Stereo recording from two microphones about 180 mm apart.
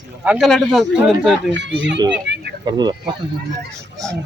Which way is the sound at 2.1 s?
70° right (ahead or behind).